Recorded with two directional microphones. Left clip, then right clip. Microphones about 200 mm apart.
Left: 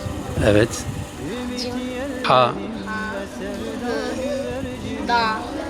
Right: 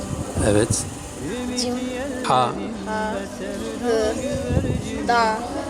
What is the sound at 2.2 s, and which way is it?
Speech, centre (ahead or behind).